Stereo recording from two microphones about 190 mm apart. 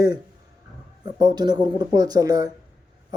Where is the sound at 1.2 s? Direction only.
20° right (ahead or behind).